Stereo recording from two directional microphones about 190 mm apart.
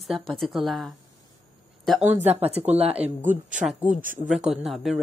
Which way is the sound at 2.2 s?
30° right (ahead or behind).